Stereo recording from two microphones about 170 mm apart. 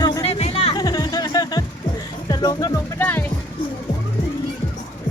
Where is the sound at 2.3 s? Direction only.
25° left (ahead or behind).